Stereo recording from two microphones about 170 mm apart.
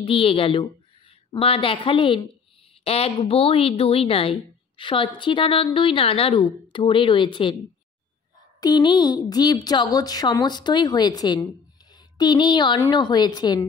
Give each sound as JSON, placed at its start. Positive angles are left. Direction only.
{"t": 0.0, "sound": "a woman's voice", "side_deg": 30}
{"t": 8.5, "sound": "speech", "side_deg": 25}